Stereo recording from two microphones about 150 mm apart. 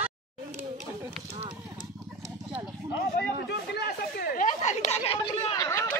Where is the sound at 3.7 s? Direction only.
90° left; by 5.6 s 40° left (ahead or behind).